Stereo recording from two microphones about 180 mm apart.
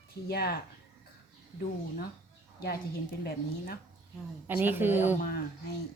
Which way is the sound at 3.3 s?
60° left (ahead or behind).